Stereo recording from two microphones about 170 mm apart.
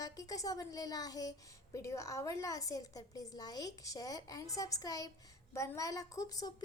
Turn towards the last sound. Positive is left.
turn(degrees=20)  # may be behind; listen again after turning